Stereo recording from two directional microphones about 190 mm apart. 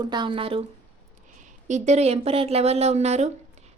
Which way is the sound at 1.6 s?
40° right (ahead or behind).